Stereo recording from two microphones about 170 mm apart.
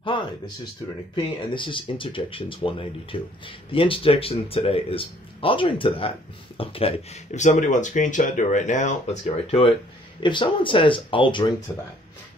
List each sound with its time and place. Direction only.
0.0 s a sound: 30° left (ahead or behind)
1.1 s speech: 30° left (ahead or behind); by 8.9 s 45° left (ahead or behind)
9.2 s speech: 35° left (ahead or behind)